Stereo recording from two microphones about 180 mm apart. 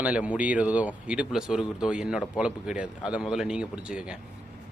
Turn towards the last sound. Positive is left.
turn(degrees=-5)  # may be behind; listen again after turning